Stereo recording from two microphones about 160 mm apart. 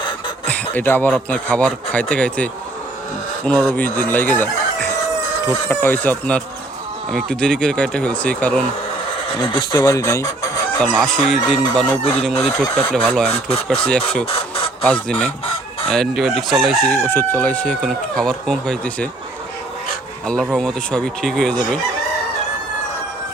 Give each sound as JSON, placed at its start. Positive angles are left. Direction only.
{"t": 0.4, "sound": "a sound", "side_deg": 10}
{"t": 1.1, "sound": "speech", "side_deg": 10}
{"t": 3.5, "sound": "speech", "side_deg": -25}
{"t": 3.9, "sound": "speech", "side_deg": 10}
{"t": 9.4, "sound": "speech", "side_deg": 30}
{"t": 10.8, "sound": "speech", "side_deg": 0}
{"t": 13.3, "sound": "speech", "side_deg": 40}
{"t": 14.3, "sound": "chicken", "side_deg": 35}
{"t": 14.8, "sound": "speech", "side_deg": 5}
{"t": 17.1, "sound": "speech", "side_deg": 10}
{"t": 20.2, "sound": "speech", "side_deg": 5}